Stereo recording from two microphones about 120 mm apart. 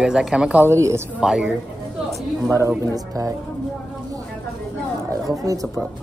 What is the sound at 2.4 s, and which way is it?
Speech, 25° right (ahead or behind).